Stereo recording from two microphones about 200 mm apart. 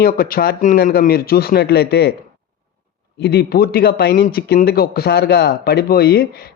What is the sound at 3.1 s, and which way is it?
Speech, 55° left (ahead or behind).